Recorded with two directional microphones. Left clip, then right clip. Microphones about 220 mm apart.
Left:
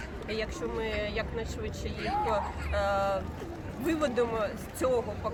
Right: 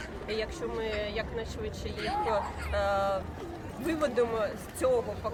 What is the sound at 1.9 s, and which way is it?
Speech, 55° right (ahead or behind).